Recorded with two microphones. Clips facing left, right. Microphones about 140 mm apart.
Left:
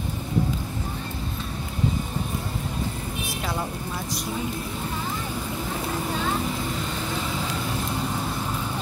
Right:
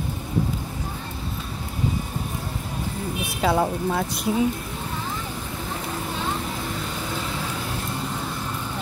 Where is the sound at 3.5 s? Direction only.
75° right (ahead or behind).